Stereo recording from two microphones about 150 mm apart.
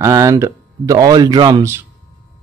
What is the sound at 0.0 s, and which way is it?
Speech, 20° right (ahead or behind).